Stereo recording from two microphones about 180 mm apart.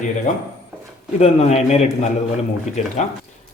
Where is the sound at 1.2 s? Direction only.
35° left (ahead or behind).